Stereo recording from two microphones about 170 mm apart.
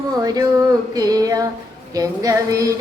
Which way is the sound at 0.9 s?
20° right (ahead or behind).